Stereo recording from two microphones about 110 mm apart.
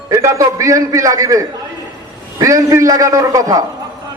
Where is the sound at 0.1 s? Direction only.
30° right (ahead or behind).